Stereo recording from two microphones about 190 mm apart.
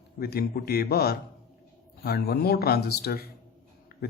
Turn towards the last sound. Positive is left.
turn(degrees=55)  # may be behind; listen again after turning